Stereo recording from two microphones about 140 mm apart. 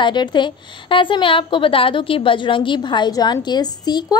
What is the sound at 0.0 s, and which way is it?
A woman's voice, 35° left (ahead or behind).